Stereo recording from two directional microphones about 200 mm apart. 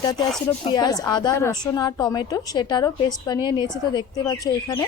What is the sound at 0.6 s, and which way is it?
A woman's voice, 20° left (ahead or behind).